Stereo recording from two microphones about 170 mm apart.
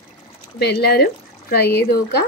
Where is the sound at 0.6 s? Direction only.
75° left (ahead or behind).